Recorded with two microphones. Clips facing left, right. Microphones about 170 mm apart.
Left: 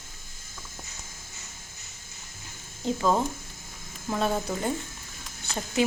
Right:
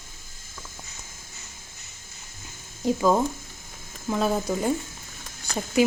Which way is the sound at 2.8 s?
10° right (ahead or behind).